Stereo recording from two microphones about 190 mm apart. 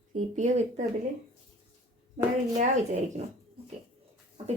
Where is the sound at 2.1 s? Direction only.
40° right (ahead or behind).